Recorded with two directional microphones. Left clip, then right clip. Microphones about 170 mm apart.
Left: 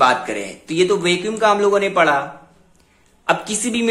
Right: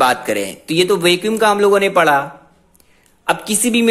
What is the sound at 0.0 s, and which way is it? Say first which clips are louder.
A woman's voice: right 1 dB; 45° right (ahead or behind).